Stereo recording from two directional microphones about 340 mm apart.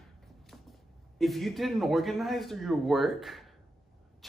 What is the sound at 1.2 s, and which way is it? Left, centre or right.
A man's voice, centre.